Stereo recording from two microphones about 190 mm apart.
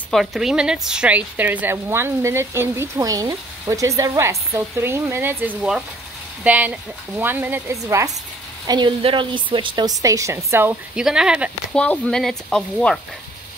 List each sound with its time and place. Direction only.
0.1 s a woman's voice: centre (ahead or behind)
11.7 s speech: 5° left (ahead or behind)